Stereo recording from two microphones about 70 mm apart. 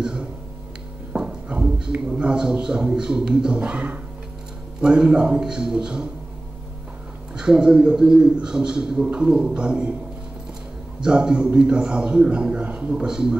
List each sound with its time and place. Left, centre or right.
0.0 s a sound: centre
1.1 s a man's voice: centre
7.3 s a man's voice: centre
11.0 s a man's voice: centre